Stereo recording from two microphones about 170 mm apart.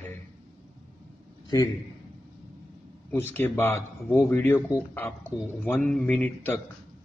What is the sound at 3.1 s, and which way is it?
Speech, 15° left (ahead or behind).